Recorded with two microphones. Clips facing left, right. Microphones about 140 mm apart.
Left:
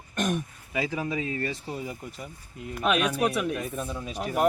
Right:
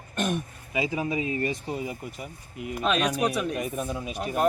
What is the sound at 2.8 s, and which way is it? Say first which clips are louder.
Speech: even; 10° left (ahead or behind).